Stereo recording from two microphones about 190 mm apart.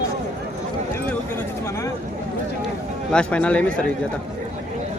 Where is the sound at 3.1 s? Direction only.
5° left (ahead or behind).